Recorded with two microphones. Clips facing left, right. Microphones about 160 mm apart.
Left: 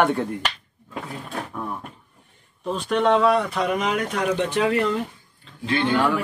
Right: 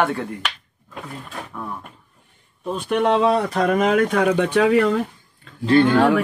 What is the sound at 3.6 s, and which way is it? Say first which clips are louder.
Speech: right 6 dB; 50° right (ahead or behind).